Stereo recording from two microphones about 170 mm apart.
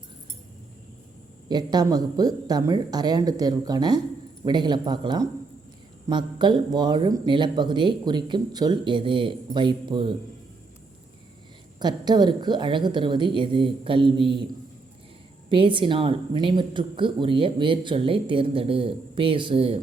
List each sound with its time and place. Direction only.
1.5 s speech: 25° right (ahead or behind)
11.8 s speech: 25° right (ahead or behind)
15.4 s speech: 30° right (ahead or behind)